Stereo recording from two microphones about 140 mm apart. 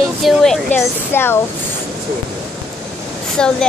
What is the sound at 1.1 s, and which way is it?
Speech, 15° left (ahead or behind).